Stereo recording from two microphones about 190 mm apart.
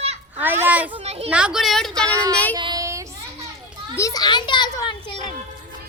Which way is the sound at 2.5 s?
20° right (ahead or behind).